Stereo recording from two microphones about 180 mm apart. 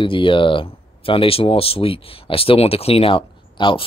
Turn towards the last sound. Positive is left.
turn(degrees=30)  # may be behind; listen again after turning